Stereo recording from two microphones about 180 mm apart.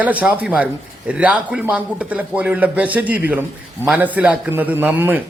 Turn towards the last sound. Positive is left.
turn(degrees=-10)  # may be behind; listen again after turning